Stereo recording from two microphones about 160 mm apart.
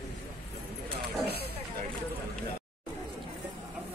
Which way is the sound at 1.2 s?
90° right.